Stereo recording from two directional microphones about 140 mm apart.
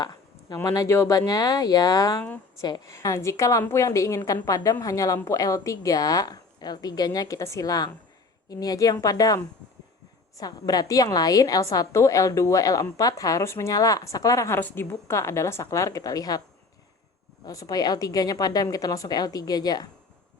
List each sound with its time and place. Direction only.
0.0 s a woman's voice: 25° left (ahead or behind)
17.4 s a woman's voice: 25° left (ahead or behind)